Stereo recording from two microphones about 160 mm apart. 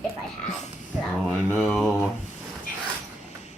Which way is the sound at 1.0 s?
5° left (ahead or behind).